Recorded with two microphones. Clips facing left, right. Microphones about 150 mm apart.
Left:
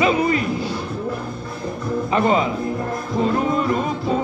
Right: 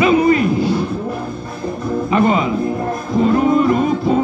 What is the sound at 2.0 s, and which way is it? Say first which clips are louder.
Speech: right 3 dB; 30° left (ahead or behind).